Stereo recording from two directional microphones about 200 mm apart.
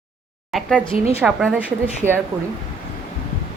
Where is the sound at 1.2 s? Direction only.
Centre (ahead or behind).